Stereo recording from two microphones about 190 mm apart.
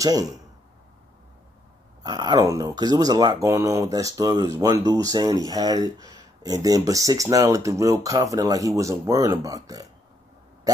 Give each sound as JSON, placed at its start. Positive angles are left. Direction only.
{"t": 0.0, "sound": "speech", "side_deg": -20}
{"t": 2.0, "sound": "speech", "side_deg": -20}